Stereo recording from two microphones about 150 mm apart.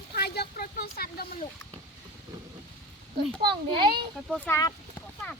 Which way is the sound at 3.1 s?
90° right.